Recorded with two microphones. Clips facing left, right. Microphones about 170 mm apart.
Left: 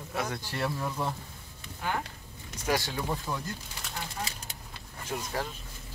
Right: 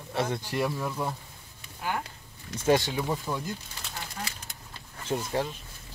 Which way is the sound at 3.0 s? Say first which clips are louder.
Right 2 dB; 5° right (ahead or behind).